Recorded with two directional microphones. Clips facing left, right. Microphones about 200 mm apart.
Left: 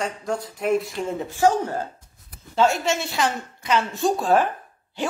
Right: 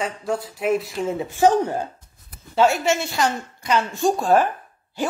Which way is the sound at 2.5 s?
5° right (ahead or behind).